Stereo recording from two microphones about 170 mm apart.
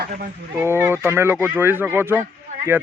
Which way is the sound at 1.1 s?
15° right (ahead or behind).